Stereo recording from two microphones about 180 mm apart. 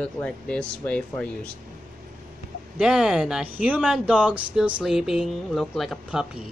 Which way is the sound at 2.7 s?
5° right (ahead or behind).